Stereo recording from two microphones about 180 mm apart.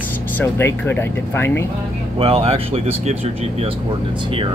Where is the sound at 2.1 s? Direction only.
35° right (ahead or behind).